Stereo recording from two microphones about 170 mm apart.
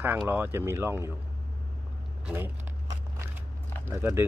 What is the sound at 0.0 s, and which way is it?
Speech, 10° right (ahead or behind).